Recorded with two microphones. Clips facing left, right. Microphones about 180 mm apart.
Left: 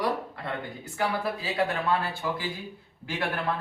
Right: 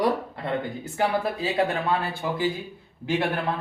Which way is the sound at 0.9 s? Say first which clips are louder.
Right 4 dB; 25° right (ahead or behind).